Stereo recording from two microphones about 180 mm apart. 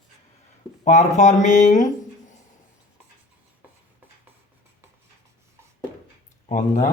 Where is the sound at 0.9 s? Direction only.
40° left (ahead or behind).